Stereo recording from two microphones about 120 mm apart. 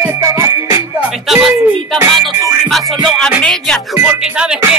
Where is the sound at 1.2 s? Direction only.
Centre (ahead or behind).